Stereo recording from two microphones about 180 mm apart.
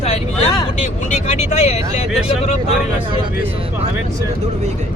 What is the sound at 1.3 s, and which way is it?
Speech, 40° left (ahead or behind).